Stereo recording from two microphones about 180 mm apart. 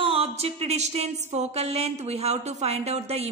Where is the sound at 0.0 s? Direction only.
30° right (ahead or behind).